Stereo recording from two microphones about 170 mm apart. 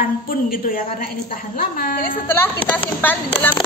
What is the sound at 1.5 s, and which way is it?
Speech, 60° left (ahead or behind).